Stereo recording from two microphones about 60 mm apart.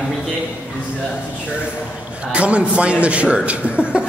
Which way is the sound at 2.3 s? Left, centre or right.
Centre.